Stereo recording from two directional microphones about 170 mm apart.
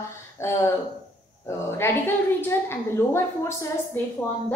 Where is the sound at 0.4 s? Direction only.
15° left (ahead or behind).